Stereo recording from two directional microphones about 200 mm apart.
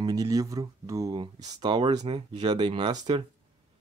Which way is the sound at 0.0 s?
20° right (ahead or behind).